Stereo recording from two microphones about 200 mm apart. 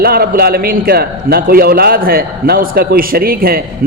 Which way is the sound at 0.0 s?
50° right (ahead or behind).